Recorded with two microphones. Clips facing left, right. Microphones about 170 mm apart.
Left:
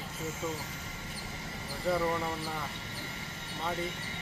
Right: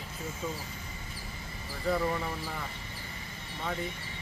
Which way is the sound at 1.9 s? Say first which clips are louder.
Even; 5° left (ahead or behind).